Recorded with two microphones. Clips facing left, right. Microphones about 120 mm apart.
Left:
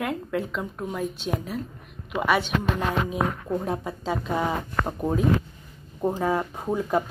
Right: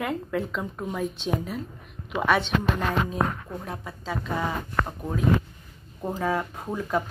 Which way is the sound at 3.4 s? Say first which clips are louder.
Left 8 dB; 25° left (ahead or behind).